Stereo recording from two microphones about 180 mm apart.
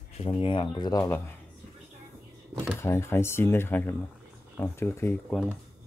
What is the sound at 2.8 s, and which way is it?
Speech, 15° left (ahead or behind).